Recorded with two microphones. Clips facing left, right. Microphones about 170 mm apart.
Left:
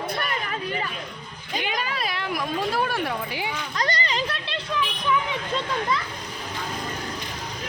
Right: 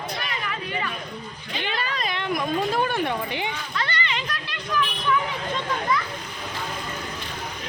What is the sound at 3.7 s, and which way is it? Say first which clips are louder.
Speech: left 4 dB; 40° left (ahead or behind).